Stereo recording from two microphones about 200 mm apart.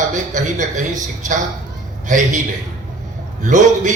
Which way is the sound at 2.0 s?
40° right (ahead or behind).